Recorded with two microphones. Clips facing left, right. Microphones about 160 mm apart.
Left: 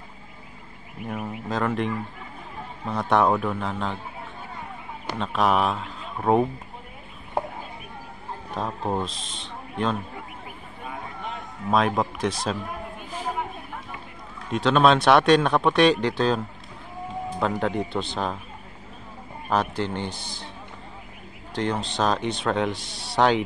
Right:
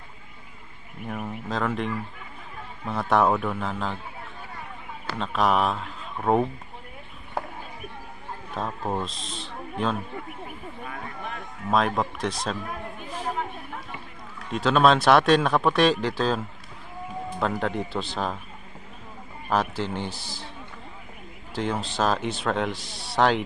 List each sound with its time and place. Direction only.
1.0 s speech: centre (ahead or behind)
5.2 s speech: centre (ahead or behind)
7.4 s a sound: 20° left (ahead or behind)
8.6 s speech: centre (ahead or behind)
11.7 s a man's voice: centre (ahead or behind)
14.5 s speech: centre (ahead or behind)
17.4 s speech: centre (ahead or behind)
19.5 s speech: centre (ahead or behind)
21.5 s speech: 5° right (ahead or behind)